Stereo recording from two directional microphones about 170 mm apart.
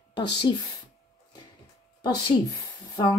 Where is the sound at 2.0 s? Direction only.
25° left (ahead or behind).